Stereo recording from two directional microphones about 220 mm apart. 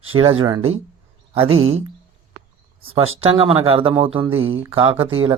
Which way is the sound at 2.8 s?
25° right (ahead or behind).